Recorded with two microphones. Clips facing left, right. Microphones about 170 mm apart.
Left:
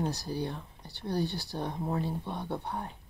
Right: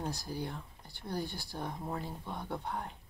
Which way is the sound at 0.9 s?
70° left (ahead or behind).